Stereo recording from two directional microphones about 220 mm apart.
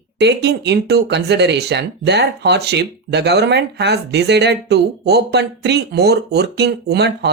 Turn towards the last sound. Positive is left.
turn(degrees=-50)  # may be behind; listen again after turning